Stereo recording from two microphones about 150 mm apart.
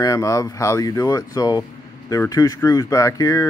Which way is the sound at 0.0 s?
20° left (ahead or behind).